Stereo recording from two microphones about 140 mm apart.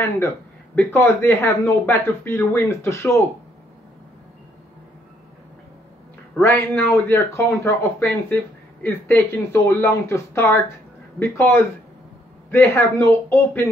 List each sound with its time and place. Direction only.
0.7 s speech: 15° left (ahead or behind)
6.4 s speech: 15° left (ahead or behind)